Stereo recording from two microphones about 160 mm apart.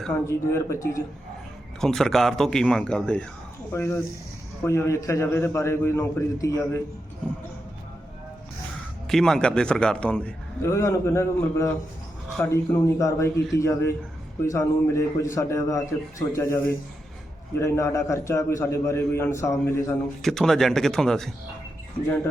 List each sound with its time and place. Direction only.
0.3 s a man's voice: 20° left (ahead or behind)
1.8 s a man's voice: 5° left (ahead or behind)
9.0 s a man's voice: 5° left (ahead or behind)
10.6 s a man's voice: 20° left (ahead or behind)
17.6 s a man's voice: 20° left (ahead or behind)
20.2 s a man's voice: 5° left (ahead or behind)